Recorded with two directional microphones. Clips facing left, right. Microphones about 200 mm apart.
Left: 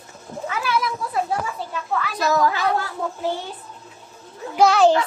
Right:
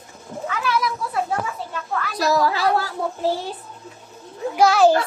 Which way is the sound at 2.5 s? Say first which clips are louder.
Right 2 dB; 35° right (ahead or behind).